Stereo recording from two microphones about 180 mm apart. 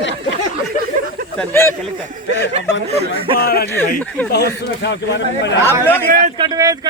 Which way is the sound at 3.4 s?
60° left (ahead or behind).